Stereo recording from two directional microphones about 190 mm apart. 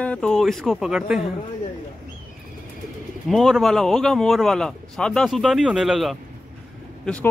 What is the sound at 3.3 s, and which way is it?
Speech, centre (ahead or behind).